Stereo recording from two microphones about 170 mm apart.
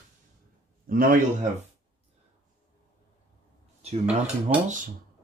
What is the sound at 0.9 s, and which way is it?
Speech, 60° right (ahead or behind).